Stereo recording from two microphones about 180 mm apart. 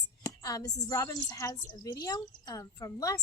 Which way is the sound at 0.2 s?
20° left (ahead or behind).